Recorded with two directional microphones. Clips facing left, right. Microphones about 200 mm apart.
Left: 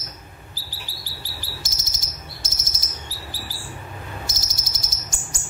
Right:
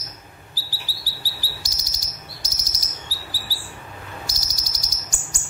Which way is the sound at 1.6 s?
20° left (ahead or behind).